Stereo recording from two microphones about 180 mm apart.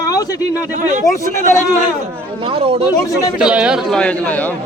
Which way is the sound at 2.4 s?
30° right (ahead or behind).